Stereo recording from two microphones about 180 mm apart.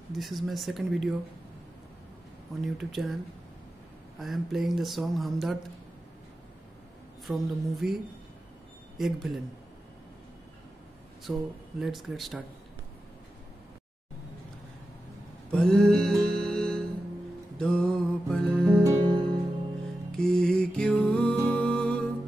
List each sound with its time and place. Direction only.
0.1 s speech: centre (ahead or behind)
2.6 s speech: centre (ahead or behind)
4.2 s speech: centre (ahead or behind)
7.2 s speech: centre (ahead or behind)
11.3 s speech: 5° right (ahead or behind)
15.5 s music: 5° left (ahead or behind)
18.9 s music: 30° right (ahead or behind)
20.1 s music: 5° left (ahead or behind)
21.5 s humming: 5° left (ahead or behind)